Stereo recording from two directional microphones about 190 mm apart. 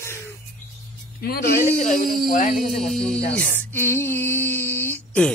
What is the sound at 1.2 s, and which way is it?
Speech, 55° left (ahead or behind).